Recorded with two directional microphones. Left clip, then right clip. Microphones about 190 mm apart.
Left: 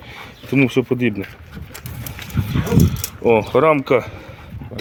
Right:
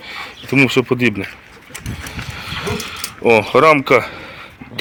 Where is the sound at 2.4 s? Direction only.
10° left (ahead or behind).